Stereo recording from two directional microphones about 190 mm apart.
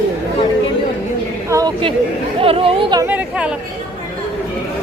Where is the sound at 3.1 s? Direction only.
5° right (ahead or behind).